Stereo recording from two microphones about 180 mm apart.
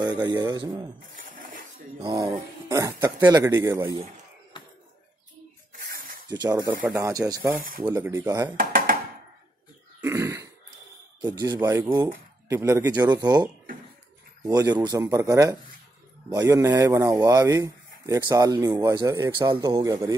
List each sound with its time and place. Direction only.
0.0 s speech: 25° right (ahead or behind)
1.1 s a sound: 50° right (ahead or behind)
2.0 s speech: 20° right (ahead or behind)
5.8 s snake: 50° right (ahead or behind)
6.2 s speech: 20° right (ahead or behind)
8.5 s a sound: 50° right (ahead or behind)
10.0 s throat clearing: 15° right (ahead or behind)
11.1 s speech: 20° right (ahead or behind)